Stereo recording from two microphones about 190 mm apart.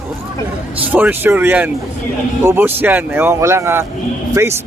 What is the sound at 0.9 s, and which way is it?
Speech, 10° right (ahead or behind).